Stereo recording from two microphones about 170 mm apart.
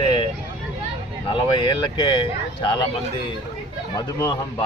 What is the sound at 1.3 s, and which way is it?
Speech, 30° left (ahead or behind).